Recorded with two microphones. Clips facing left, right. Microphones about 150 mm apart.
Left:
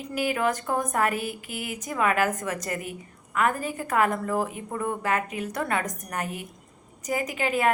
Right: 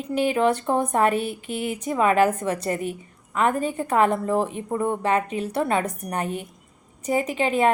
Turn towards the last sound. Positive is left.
turn(degrees=-25)  # may be behind; listen again after turning